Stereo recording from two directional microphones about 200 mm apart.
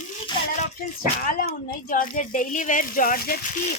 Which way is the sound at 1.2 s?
45° left (ahead or behind).